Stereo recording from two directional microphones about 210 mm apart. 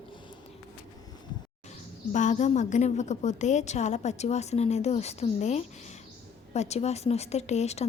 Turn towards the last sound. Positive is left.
turn(degrees=30)  # may be behind; listen again after turning